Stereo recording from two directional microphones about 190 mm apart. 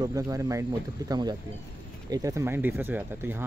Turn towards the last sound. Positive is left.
turn(degrees=-10)  # may be behind; listen again after turning